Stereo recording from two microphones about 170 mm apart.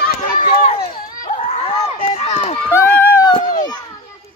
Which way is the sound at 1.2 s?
45° left (ahead or behind).